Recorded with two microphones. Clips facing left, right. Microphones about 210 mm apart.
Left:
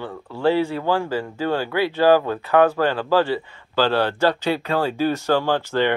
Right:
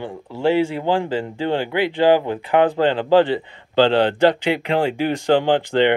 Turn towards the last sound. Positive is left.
turn(degrees=-20)  # may be behind; listen again after turning